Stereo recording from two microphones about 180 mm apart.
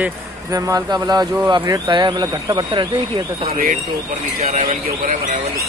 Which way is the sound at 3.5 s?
55° right (ahead or behind).